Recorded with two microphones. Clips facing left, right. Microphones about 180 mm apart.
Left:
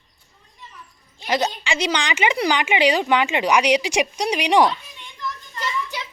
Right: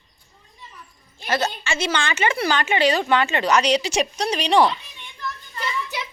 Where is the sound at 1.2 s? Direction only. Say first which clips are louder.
Left 1 dB; 15° left (ahead or behind).